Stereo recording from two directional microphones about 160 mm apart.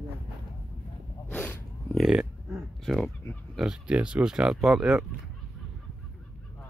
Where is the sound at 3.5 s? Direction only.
5° right (ahead or behind).